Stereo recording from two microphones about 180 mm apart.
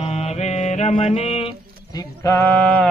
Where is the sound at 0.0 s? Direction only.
35° left (ahead or behind).